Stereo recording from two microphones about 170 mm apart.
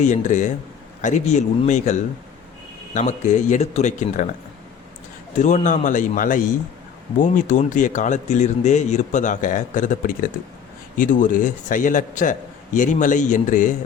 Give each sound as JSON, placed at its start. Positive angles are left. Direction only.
{"t": 0.0, "sound": "speech", "side_deg": 45}
{"t": 5.4, "sound": "speech", "side_deg": 45}